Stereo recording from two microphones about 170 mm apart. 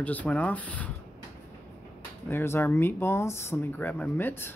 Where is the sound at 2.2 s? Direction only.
15° left (ahead or behind).